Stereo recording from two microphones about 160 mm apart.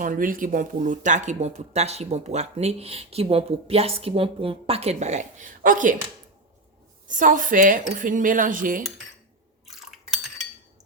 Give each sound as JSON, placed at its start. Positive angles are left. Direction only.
{"t": 0.0, "sound": "speech", "side_deg": -60}
{"t": 7.1, "sound": "speech", "side_deg": -55}
{"t": 9.6, "sound": "a sound", "side_deg": 0}